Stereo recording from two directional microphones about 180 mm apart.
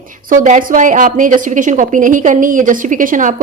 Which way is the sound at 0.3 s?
45° right (ahead or behind).